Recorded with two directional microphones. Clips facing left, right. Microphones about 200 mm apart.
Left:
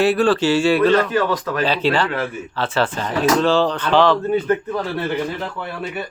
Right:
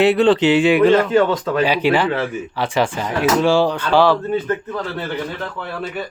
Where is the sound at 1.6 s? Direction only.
15° right (ahead or behind).